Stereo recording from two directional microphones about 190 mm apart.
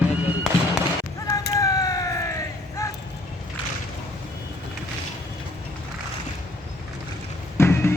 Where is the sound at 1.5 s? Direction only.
20° left (ahead or behind).